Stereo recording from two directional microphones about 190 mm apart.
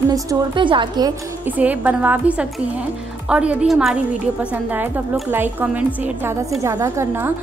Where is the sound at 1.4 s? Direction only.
10° right (ahead or behind).